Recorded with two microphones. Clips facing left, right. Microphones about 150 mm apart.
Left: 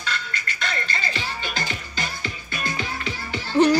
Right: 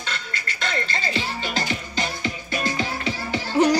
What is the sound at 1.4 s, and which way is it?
Music, 25° right (ahead or behind).